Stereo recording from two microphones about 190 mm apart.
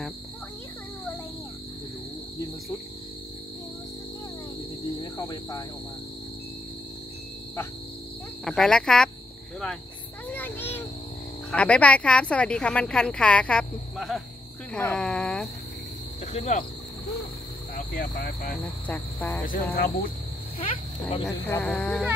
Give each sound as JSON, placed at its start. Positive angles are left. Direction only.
{"t": 4.8, "sound": "a sound", "side_deg": 20}
{"t": 8.5, "sound": "a woman's voice", "side_deg": 5}
{"t": 10.3, "sound": "a sound", "side_deg": 10}
{"t": 11.5, "sound": "a woman's voice", "side_deg": 5}
{"t": 16.3, "sound": "speech", "side_deg": 40}
{"t": 17.7, "sound": "cricket", "side_deg": 45}
{"t": 18.9, "sound": "cricket", "side_deg": 5}
{"t": 19.4, "sound": "cricket", "side_deg": 50}
{"t": 20.5, "sound": "a sound", "side_deg": 30}
{"t": 21.5, "sound": "a woman's voice", "side_deg": 5}